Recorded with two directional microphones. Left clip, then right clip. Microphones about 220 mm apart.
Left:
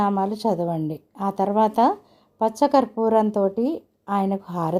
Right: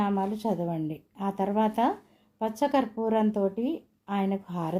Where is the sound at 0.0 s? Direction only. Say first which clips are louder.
Left 7 dB; 40° left (ahead or behind).